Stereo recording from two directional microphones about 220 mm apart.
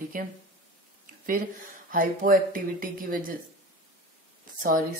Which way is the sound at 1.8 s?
40° right (ahead or behind).